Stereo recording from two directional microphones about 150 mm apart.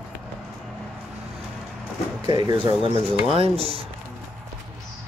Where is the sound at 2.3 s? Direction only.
30° right (ahead or behind).